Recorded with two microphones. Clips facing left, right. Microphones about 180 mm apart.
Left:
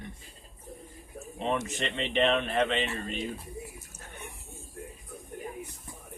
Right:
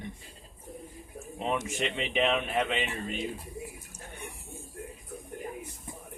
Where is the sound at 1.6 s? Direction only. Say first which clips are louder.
Right 1 dB; 10° right (ahead or behind).